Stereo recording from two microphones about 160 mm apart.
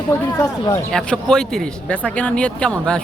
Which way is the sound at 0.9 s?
5° left (ahead or behind).